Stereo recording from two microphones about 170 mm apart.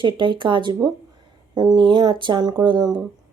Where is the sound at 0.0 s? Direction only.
30° right (ahead or behind).